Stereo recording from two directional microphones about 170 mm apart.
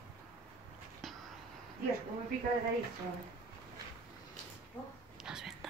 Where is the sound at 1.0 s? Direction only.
Centre (ahead or behind).